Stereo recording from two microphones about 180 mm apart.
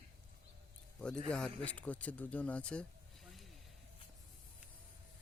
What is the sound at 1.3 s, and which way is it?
Speech, 5° left (ahead or behind).